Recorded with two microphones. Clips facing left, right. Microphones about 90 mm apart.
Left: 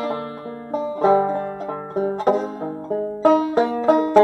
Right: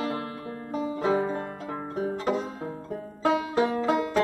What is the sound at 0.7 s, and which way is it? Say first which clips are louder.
Banjo: left 9 dB; 45° left (ahead or behind).